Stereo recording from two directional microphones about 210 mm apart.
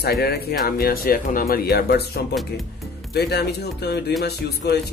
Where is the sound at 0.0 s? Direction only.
50° left (ahead or behind).